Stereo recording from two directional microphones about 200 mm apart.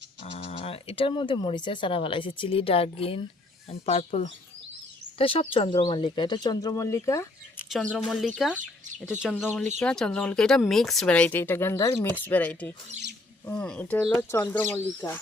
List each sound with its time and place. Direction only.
0.3 s speech: 30° left (ahead or behind)
7.7 s speech: centre (ahead or behind)